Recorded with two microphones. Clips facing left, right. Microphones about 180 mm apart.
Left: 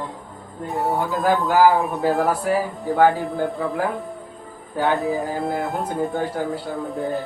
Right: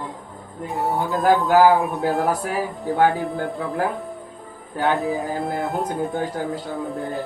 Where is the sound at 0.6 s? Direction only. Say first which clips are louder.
Left 1 dB; centre (ahead or behind).